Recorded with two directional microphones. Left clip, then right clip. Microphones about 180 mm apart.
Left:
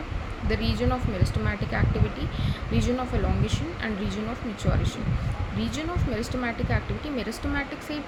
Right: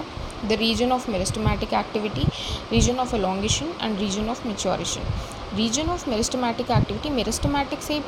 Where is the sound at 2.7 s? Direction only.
15° right (ahead or behind).